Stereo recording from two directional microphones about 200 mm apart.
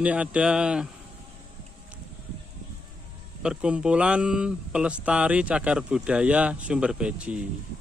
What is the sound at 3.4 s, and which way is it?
Speech, 5° right (ahead or behind).